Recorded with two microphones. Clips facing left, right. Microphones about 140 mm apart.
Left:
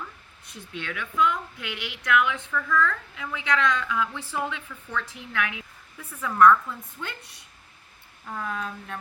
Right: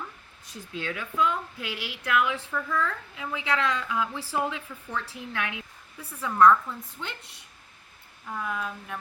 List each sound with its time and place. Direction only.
0.7 s a woman's voice: 30° right (ahead or behind)
6.0 s a woman's voice: 10° right (ahead or behind)
8.3 s speech: 5° right (ahead or behind)